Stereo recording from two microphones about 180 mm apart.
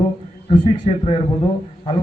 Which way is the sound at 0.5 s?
30° left (ahead or behind).